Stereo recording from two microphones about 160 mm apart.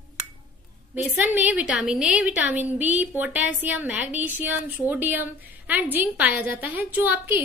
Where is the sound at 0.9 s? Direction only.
10° right (ahead or behind).